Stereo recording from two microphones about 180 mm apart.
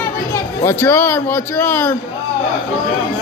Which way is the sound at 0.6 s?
10° left (ahead or behind).